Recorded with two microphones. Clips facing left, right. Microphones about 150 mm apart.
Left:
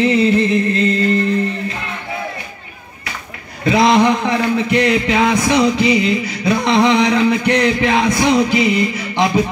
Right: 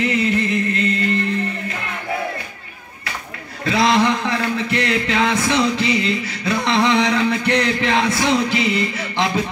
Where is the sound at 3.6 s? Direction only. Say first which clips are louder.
Left 4 dB; 15° left (ahead or behind).